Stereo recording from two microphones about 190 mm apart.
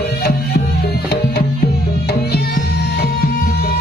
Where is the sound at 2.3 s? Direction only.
60° left (ahead or behind).